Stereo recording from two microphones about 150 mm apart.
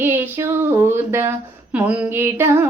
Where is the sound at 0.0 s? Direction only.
15° right (ahead or behind).